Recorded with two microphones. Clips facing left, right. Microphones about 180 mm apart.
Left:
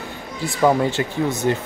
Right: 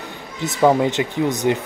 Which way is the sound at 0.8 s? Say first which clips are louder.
Right 2 dB; 15° right (ahead or behind).